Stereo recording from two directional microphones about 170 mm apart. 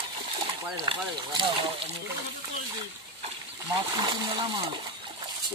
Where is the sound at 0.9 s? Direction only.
30° right (ahead or behind).